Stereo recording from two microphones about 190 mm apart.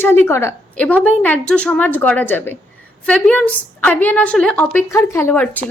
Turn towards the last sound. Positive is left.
turn(degrees=10)  # may be behind; listen again after turning